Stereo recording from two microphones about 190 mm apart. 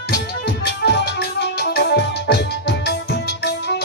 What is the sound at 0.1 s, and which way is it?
Music, 55° left (ahead or behind).